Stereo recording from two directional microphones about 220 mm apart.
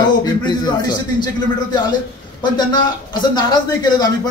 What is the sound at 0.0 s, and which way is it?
A man's voice, 20° left (ahead or behind).